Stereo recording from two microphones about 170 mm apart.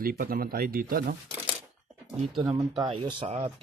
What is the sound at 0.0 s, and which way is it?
Speech, 60° right (ahead or behind).